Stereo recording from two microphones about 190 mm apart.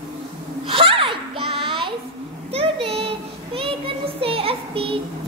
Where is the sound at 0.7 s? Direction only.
30° right (ahead or behind).